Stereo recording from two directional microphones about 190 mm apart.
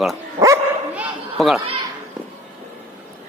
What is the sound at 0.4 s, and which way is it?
Dog, 15° right (ahead or behind).